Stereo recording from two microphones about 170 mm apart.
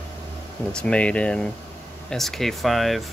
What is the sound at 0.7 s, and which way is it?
Speech, 5° left (ahead or behind).